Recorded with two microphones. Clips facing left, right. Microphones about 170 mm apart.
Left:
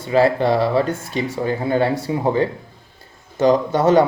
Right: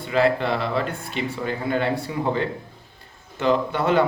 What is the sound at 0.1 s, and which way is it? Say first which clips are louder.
A man's voice: left 5 dB; 40° left (ahead or behind).